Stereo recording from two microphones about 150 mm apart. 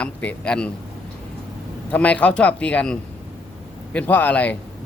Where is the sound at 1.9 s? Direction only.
10° left (ahead or behind).